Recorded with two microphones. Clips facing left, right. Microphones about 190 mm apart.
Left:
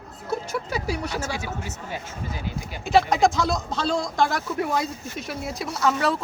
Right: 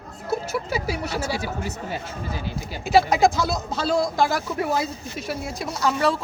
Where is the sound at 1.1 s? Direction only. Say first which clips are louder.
Right 3 dB; 35° right (ahead or behind).